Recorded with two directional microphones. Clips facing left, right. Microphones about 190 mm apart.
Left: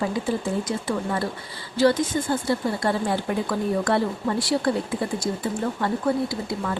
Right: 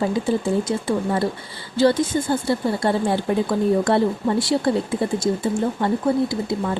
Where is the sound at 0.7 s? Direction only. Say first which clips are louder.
Right 4 dB; 30° right (ahead or behind).